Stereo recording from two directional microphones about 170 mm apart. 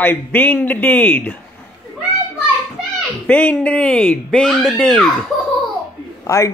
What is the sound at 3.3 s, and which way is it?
Speech, 10° left (ahead or behind).